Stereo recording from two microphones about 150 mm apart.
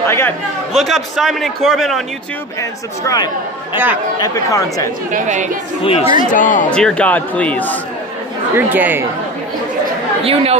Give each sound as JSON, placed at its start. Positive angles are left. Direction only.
{"t": 0.0, "sound": "speech", "side_deg": 15}
{"t": 0.7, "sound": "a man's voice", "side_deg": 0}
{"t": 3.0, "sound": "speech", "side_deg": 25}
{"t": 3.7, "sound": "speech", "side_deg": -10}
{"t": 4.2, "sound": "speech", "side_deg": 20}
{"t": 5.1, "sound": "a woman's voice", "side_deg": -55}
{"t": 5.9, "sound": "speech", "side_deg": 40}
{"t": 6.1, "sound": "speech", "side_deg": 60}
{"t": 6.7, "sound": "speech", "side_deg": 5}
{"t": 8.5, "sound": "speech", "side_deg": -15}
{"t": 10.2, "sound": "speech", "side_deg": -40}